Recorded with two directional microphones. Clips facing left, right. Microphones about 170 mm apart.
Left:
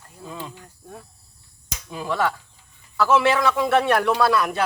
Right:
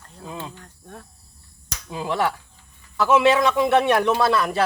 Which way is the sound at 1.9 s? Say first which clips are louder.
Right 1 dB; 20° right (ahead or behind).